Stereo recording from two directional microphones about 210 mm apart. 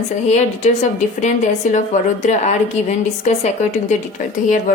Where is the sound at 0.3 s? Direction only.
30° left (ahead or behind).